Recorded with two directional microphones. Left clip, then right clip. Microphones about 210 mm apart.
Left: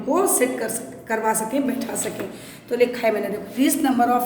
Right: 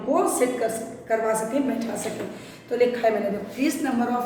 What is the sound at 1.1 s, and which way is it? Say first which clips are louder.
A woman's voice: left 1 dB; 40° left (ahead or behind).